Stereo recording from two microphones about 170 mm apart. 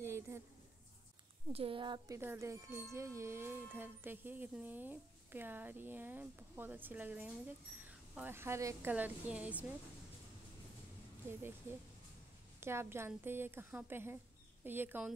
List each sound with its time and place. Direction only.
0.0 s a sound: 15° right (ahead or behind)
1.5 s speech: 35° right (ahead or behind)
2.1 s speech: 15° right (ahead or behind)
12.5 s speech: 15° right (ahead or behind)